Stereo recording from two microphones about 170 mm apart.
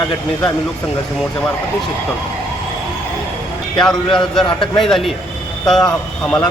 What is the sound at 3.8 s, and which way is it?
Speech, 5° left (ahead or behind).